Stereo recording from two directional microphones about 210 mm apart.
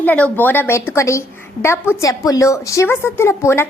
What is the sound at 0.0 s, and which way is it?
A woman's voice, 10° left (ahead or behind).